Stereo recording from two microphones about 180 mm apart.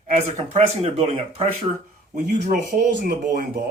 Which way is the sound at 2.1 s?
45° right (ahead or behind).